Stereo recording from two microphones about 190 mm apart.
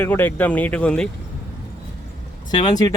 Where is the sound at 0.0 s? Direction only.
10° left (ahead or behind).